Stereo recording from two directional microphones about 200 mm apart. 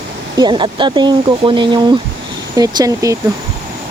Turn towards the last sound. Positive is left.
turn(degrees=-15)  # may be behind; listen again after turning